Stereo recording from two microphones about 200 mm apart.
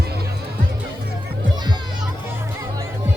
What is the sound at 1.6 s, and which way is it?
Music, 20° right (ahead or behind).